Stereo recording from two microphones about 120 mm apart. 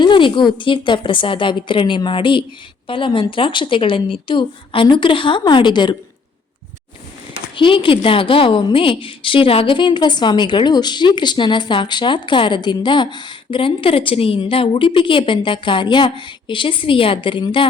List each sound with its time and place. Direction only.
0.0 s a woman's voice: 45° left (ahead or behind)
7.5 s a woman's voice: 45° left (ahead or behind)